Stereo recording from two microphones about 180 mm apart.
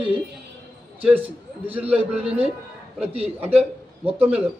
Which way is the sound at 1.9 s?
5° right (ahead or behind).